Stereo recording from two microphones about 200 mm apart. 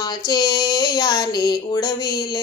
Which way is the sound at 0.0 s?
20° left (ahead or behind).